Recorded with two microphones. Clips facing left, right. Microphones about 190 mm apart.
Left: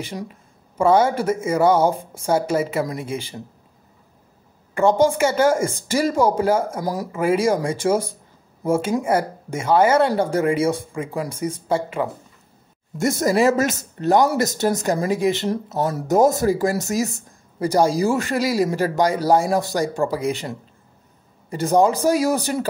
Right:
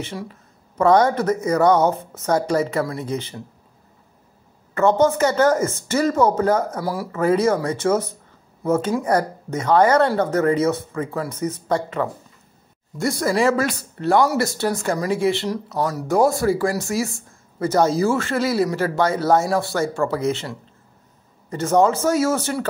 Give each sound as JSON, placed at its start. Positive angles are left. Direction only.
{"t": 0.0, "sound": "speech", "side_deg": 15}
{"t": 4.7, "sound": "speech", "side_deg": 10}
{"t": 13.2, "sound": "speech", "side_deg": 20}
{"t": 21.7, "sound": "speech", "side_deg": 15}